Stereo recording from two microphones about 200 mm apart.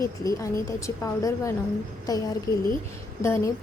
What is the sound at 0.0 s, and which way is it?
A woman's voice, 15° left (ahead or behind).